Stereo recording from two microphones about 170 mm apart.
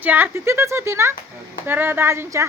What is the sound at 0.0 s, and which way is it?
A woman's voice, 10° right (ahead or behind).